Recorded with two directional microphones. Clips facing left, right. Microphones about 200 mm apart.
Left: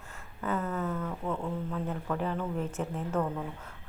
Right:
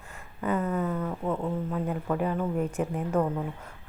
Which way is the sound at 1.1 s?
25° right (ahead or behind).